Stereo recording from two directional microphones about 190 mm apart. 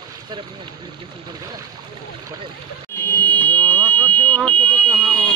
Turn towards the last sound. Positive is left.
turn(degrees=5)  # may be behind; listen again after turning